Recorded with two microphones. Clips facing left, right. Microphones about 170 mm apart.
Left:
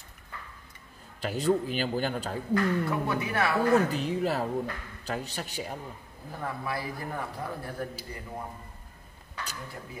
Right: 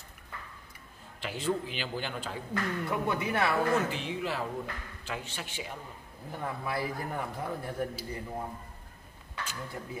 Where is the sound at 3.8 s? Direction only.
40° left (ahead or behind).